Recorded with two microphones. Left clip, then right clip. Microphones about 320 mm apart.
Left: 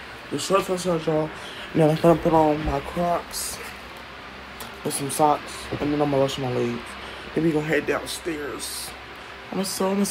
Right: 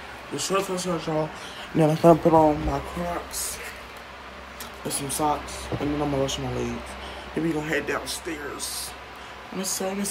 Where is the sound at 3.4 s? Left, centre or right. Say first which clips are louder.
Left 1 dB; centre.